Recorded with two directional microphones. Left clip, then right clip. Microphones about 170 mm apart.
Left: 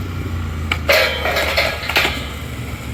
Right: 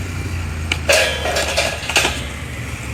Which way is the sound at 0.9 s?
25° right (ahead or behind).